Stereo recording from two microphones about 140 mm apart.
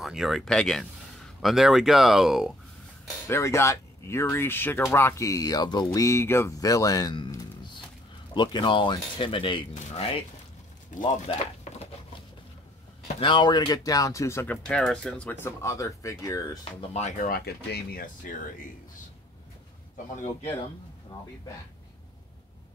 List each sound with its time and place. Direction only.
0.0 s speech: centre (ahead or behind)
3.3 s speech: 20° left (ahead or behind)
5.9 s speech: 20° left (ahead or behind); by 9.6 s 35° left (ahead or behind)
9.8 s speech: 45° left (ahead or behind)
10.9 s speech: 65° left (ahead or behind)
11.2 s a sound: 45° left (ahead or behind)
13.2 s speech: 35° left (ahead or behind); by 14.6 s 15° left (ahead or behind)
14.7 s speech: 5° left (ahead or behind); by 16.4 s 25° left (ahead or behind)
16.8 s speech: 50° left (ahead or behind)
17.9 s speech: 75° left (ahead or behind)